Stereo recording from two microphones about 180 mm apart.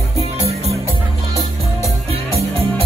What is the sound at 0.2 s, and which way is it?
Music, 35° right (ahead or behind).